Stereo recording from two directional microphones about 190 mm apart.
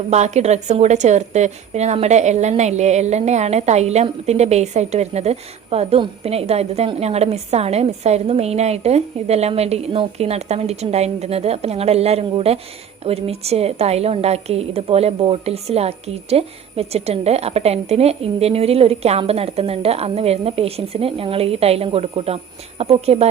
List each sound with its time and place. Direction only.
0.1 s a woman's voice: 35° right (ahead or behind)